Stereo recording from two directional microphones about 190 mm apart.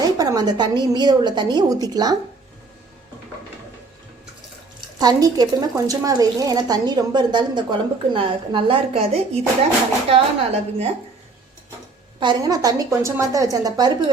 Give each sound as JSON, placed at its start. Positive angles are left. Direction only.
{"t": 0.0, "sound": "a woman's voice", "side_deg": -20}
{"t": 4.9, "sound": "a woman's voice", "side_deg": -20}
{"t": 12.2, "sound": "a woman's voice", "side_deg": -20}